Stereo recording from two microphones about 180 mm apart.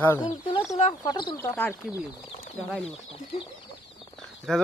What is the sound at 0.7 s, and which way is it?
Speech, 40° left (ahead or behind).